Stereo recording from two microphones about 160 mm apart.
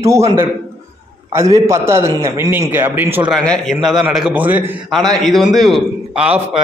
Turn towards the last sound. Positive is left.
turn(degrees=-5)  # may be behind; listen again after turning